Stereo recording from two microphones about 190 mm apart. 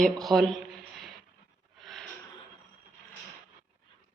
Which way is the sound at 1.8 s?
Centre (ahead or behind).